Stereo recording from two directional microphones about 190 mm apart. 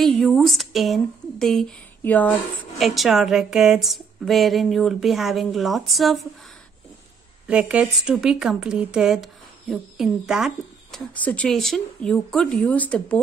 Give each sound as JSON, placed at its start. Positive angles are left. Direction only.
{"t": 0.2, "sound": "speech", "side_deg": 0}
{"t": 7.4, "sound": "speech", "side_deg": -5}